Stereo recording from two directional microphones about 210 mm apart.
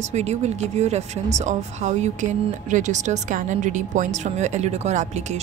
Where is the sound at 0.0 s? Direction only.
30° right (ahead or behind).